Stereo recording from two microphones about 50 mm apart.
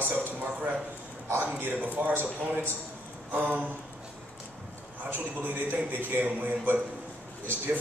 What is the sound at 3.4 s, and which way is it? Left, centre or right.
Speech, right.